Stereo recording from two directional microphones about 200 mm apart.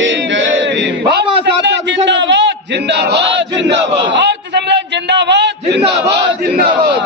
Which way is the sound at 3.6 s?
60° right (ahead or behind).